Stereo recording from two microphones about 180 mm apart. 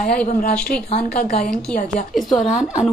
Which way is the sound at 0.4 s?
50° left (ahead or behind).